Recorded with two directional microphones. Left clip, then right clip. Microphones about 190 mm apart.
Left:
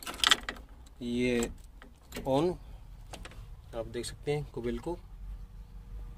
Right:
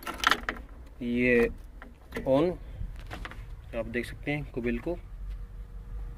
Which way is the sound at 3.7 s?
20° left (ahead or behind).